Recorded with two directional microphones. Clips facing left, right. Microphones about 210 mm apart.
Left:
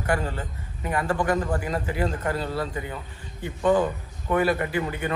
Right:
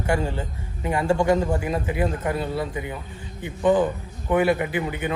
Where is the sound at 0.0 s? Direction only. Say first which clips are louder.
Right 2 dB; 25° right (ahead or behind).